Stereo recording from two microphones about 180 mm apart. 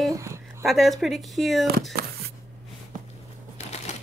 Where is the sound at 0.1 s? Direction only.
15° right (ahead or behind).